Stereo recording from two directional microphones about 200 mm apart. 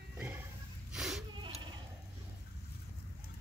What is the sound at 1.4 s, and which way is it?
Bleat, 25° right (ahead or behind).